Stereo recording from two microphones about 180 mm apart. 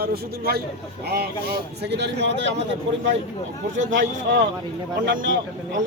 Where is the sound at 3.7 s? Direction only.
90° right.